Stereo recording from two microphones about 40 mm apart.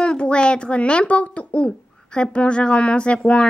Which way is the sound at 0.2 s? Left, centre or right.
Left.